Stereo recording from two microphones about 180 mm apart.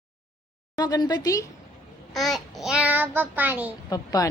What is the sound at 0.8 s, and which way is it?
Speech, 20° left (ahead or behind).